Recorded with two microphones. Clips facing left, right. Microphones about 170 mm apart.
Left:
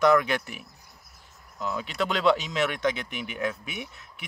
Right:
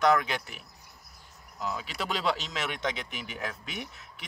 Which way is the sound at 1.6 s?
Centre (ahead or behind).